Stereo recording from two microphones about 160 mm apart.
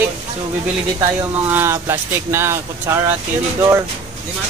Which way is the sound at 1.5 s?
15° right (ahead or behind).